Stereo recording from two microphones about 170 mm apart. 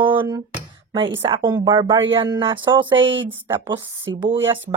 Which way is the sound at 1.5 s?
20° right (ahead or behind).